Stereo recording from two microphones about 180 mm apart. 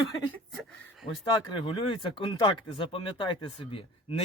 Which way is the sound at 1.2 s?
25° left (ahead or behind).